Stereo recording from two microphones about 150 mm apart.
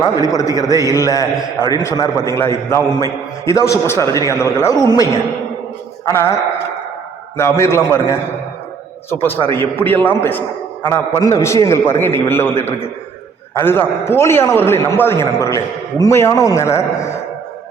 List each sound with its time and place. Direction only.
0.0 s a man's voice: 25° left (ahead or behind)
6.1 s a man's voice: 15° left (ahead or behind)